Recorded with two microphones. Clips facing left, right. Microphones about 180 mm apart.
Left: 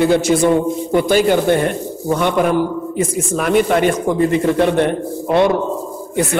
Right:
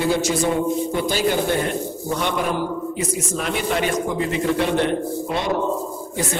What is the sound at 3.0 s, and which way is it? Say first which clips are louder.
A man's voice: left 9 dB; 50° left (ahead or behind).